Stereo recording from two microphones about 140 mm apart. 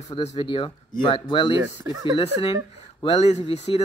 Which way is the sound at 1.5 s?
25° right (ahead or behind).